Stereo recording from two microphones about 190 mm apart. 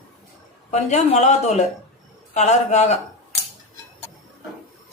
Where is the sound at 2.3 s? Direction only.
35° left (ahead or behind).